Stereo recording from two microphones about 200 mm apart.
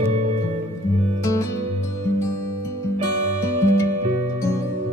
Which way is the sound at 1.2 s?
15° left (ahead or behind).